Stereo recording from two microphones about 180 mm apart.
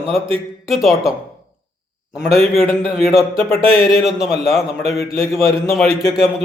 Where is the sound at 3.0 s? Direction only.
Centre (ahead or behind).